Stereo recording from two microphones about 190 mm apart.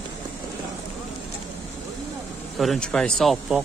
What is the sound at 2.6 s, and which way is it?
Speech, centre (ahead or behind).